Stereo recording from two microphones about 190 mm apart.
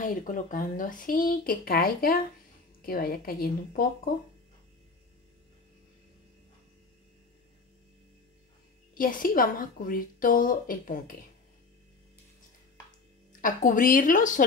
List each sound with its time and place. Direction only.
0.0 s a woman's voice: 45° left (ahead or behind)
8.9 s a woman's voice: 45° left (ahead or behind)
13.4 s a woman's voice: 45° left (ahead or behind)